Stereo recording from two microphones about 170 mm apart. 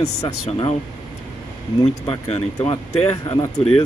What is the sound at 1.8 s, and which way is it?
Speech, 35° left (ahead or behind).